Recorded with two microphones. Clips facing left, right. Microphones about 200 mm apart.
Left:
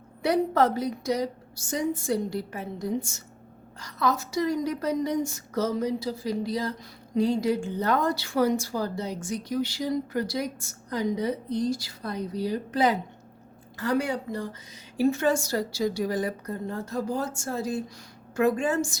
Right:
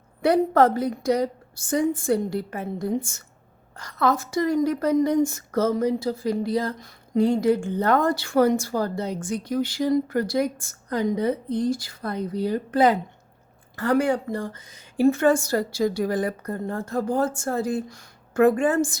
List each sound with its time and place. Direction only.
0.2 s a woman's voice: 55° right (ahead or behind)